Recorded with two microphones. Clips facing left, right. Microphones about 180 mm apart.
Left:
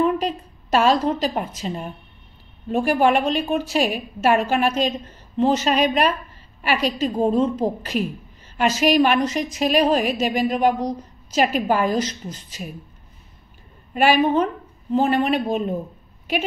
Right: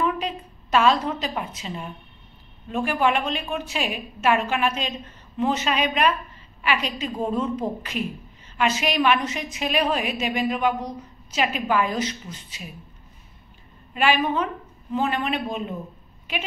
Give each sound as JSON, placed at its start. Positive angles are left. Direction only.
{"t": 0.0, "sound": "a woman's voice", "side_deg": 40}
{"t": 13.9, "sound": "a woman's voice", "side_deg": 40}